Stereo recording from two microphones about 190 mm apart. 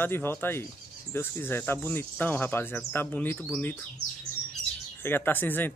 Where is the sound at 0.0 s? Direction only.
10° left (ahead or behind).